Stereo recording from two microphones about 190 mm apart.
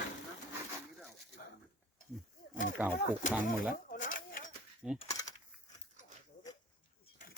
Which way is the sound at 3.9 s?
45° left (ahead or behind).